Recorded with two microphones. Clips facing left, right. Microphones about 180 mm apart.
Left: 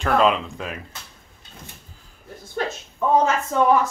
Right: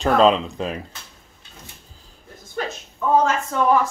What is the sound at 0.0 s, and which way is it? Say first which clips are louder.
Speech: right 3 dB; 30° right (ahead or behind).